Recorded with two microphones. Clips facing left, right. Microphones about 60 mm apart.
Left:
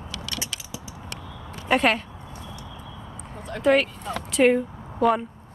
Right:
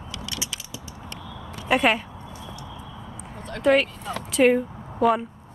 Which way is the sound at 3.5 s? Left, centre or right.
Centre.